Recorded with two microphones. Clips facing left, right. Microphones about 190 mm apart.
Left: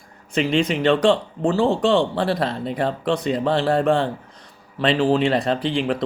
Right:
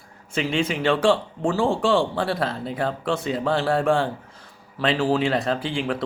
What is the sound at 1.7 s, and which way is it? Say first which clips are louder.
Speech: left 2 dB; 20° left (ahead or behind).